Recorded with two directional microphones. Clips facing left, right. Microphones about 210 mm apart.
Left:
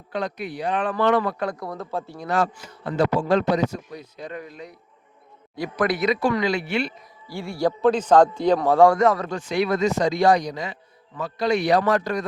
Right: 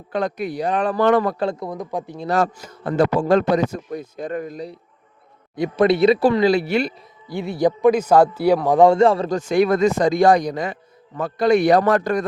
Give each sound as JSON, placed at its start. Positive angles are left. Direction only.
{"t": 0.1, "sound": "a man's voice", "side_deg": -50}
{"t": 1.4, "sound": "speech", "side_deg": -25}
{"t": 2.2, "sound": "a man's voice", "side_deg": -40}
{"t": 5.5, "sound": "speech", "side_deg": -25}
{"t": 7.3, "sound": "a man's voice", "side_deg": -20}
{"t": 9.4, "sound": "a man's voice", "side_deg": -50}